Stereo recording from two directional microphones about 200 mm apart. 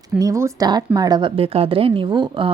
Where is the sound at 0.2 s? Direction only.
15° right (ahead or behind).